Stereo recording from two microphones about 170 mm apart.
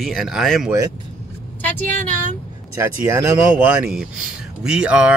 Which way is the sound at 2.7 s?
15° right (ahead or behind).